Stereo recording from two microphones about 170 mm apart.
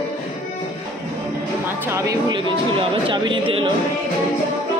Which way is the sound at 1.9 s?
20° right (ahead or behind).